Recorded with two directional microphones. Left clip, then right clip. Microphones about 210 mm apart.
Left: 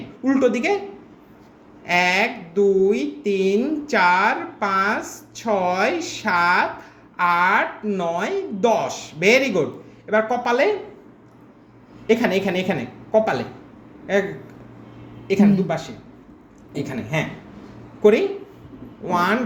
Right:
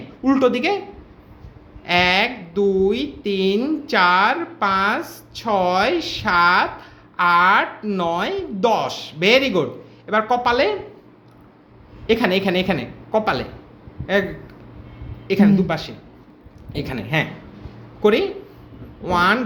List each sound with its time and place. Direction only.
0.3 s a woman's voice: 20° right (ahead or behind)
1.8 s speech: 15° right (ahead or behind)
12.0 s a woman's voice: 20° right (ahead or behind)
15.3 s a woman's voice: 25° right (ahead or behind)
19.1 s a woman's voice: 20° right (ahead or behind)